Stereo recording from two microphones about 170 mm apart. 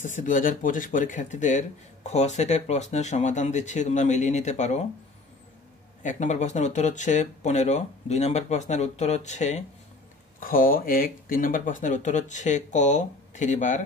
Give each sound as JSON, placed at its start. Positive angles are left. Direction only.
{"t": 0.0, "sound": "speech", "side_deg": 50}
{"t": 6.0, "sound": "speech", "side_deg": 45}
{"t": 10.4, "sound": "speech", "side_deg": 55}